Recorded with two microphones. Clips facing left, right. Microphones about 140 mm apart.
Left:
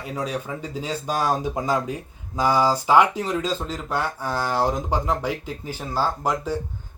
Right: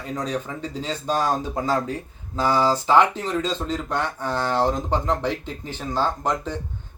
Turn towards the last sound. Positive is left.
turn(degrees=10)  # may be behind; listen again after turning